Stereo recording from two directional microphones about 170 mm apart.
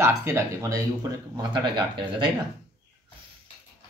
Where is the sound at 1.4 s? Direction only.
30° right (ahead or behind).